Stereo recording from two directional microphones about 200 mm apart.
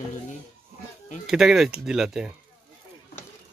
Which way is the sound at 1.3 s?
Centre (ahead or behind).